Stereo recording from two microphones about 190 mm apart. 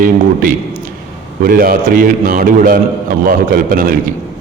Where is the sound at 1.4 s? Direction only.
50° right (ahead or behind).